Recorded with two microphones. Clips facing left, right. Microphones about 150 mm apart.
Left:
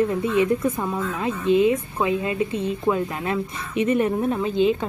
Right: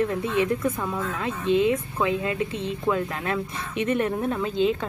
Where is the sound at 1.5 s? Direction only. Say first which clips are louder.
Left 3 dB; 5° left (ahead or behind).